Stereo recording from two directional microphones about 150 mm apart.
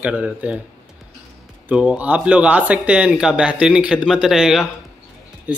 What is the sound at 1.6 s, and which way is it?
Speech, 10° right (ahead or behind).